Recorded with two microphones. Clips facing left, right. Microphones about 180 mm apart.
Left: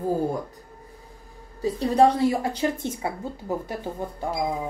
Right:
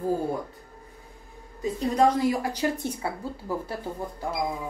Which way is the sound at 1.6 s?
35° left (ahead or behind).